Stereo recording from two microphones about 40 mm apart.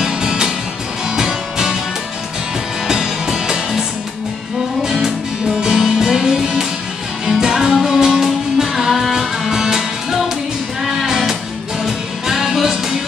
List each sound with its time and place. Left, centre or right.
0.0 s music: centre
2.9 s music: centre
5.6 s music: centre